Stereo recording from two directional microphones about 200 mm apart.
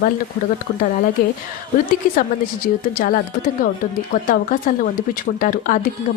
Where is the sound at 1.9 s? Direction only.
45° left (ahead or behind).